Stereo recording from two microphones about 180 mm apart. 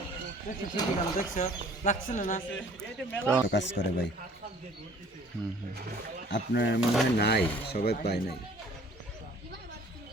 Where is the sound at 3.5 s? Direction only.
80° left.